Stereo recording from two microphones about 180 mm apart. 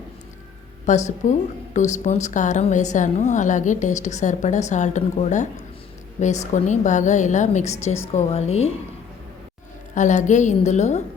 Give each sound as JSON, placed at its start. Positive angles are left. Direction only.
{"t": 0.9, "sound": "a woman's voice", "side_deg": 40}
{"t": 9.9, "sound": "a woman's voice", "side_deg": 45}